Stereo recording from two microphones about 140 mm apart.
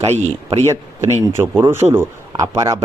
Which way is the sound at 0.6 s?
20° right (ahead or behind).